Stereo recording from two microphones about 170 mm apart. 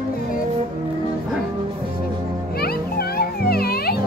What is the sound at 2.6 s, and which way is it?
Music, 65° left (ahead or behind).